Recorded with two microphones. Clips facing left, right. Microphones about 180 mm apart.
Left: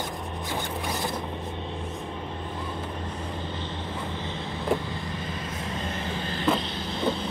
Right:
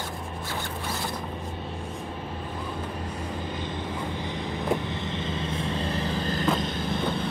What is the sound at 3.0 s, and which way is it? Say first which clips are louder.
Vehicle: right 1 dB; 10° right (ahead or behind).